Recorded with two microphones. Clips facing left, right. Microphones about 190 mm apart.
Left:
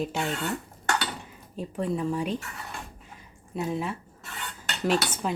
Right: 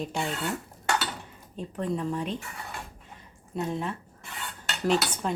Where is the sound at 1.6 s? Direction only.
5° left (ahead or behind).